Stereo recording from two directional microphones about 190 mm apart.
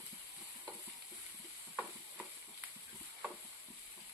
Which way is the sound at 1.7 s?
10° right (ahead or behind).